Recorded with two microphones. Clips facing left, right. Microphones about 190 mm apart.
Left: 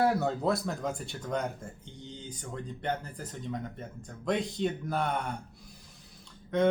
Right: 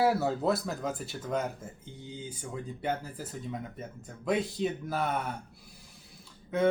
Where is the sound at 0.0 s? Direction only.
5° right (ahead or behind).